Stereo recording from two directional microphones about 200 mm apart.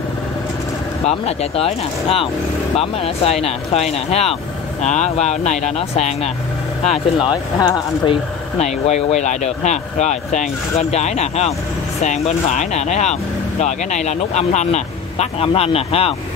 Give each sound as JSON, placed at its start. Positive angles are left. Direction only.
{"t": 1.0, "sound": "speech", "side_deg": 30}